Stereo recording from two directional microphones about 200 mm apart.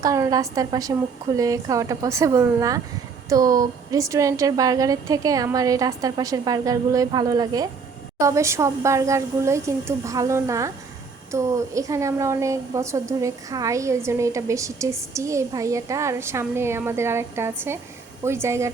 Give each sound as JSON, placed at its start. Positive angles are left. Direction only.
{"t": 0.0, "sound": "a woman's voice", "side_deg": -15}